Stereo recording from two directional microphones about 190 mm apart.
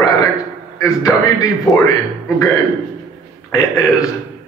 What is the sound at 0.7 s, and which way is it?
Speech, 15° left (ahead or behind).